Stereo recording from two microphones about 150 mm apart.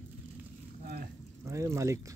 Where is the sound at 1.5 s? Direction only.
20° right (ahead or behind).